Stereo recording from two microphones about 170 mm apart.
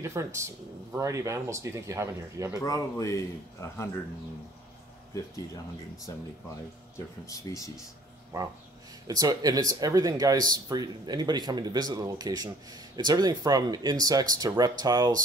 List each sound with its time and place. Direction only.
0.0 s speech: 15° right (ahead or behind)
2.6 s speech: 20° left (ahead or behind)
6.1 s speech: 20° left (ahead or behind)
7.2 s speech: 20° left (ahead or behind)
9.0 s speech: 20° right (ahead or behind)